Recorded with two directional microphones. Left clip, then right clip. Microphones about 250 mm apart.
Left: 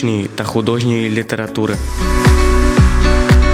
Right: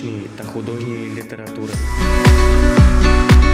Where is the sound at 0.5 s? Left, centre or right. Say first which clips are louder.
Left 9 dB; left.